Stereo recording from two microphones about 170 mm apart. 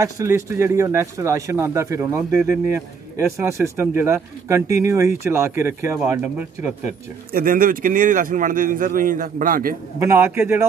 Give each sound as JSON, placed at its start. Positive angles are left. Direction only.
{"t": 0.0, "sound": "a man's voice", "side_deg": -15}
{"t": 7.3, "sound": "speech", "side_deg": -55}
{"t": 9.9, "sound": "a man's voice", "side_deg": -15}